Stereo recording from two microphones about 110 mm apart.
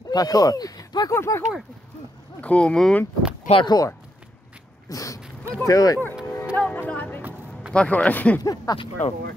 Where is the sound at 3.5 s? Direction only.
90° left.